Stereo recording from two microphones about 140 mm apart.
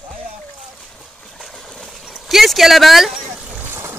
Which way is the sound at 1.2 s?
Centre (ahead or behind).